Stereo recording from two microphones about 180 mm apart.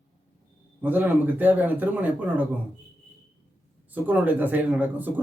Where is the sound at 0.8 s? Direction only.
10° right (ahead or behind).